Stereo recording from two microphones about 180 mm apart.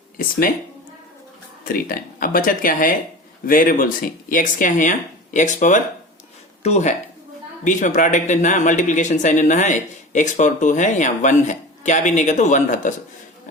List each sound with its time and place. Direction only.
0.2 s speech: 55° left (ahead or behind)
1.6 s speech: 50° left (ahead or behind)